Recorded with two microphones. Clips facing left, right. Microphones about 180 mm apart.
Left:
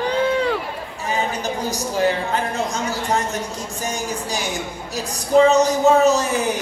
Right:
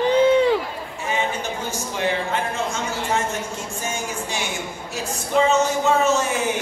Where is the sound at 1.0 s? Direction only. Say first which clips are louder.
Left 2 dB; 35° left (ahead or behind).